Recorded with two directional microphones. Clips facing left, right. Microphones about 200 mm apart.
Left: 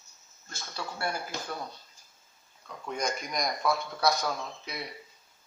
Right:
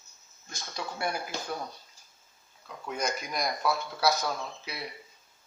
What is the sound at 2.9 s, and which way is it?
Speech, 5° right (ahead or behind).